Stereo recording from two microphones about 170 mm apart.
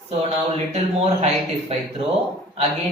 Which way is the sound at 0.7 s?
40° right (ahead or behind).